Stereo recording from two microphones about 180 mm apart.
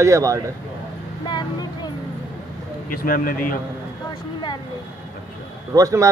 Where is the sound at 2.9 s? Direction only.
55° left (ahead or behind).